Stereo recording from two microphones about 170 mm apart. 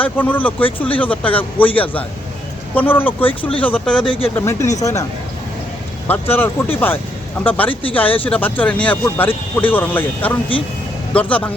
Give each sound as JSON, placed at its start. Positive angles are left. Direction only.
{"t": 0.0, "sound": "speech", "side_deg": 10}
{"t": 6.1, "sound": "speech", "side_deg": 10}
{"t": 7.7, "sound": "speech", "side_deg": 30}
{"t": 7.9, "sound": "speech", "side_deg": 10}